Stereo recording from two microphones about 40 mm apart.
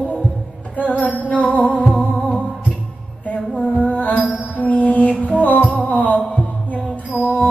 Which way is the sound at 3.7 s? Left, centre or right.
Left.